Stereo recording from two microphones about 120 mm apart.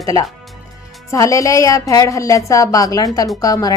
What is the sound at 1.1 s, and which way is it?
A woman's voice, 25° left (ahead or behind).